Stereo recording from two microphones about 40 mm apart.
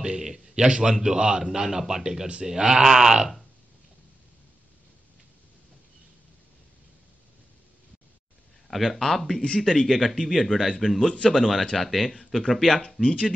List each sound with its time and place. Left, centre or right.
0.0 s a man's voice: centre
8.6 s speech: centre